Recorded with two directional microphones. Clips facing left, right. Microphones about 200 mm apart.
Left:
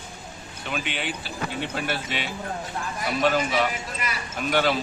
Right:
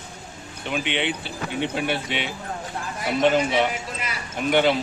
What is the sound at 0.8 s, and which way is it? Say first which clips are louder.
Speech: right 5 dB; 75° right (ahead or behind).